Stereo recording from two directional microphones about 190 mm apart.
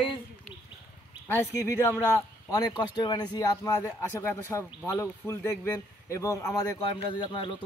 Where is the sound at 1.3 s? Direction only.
15° left (ahead or behind).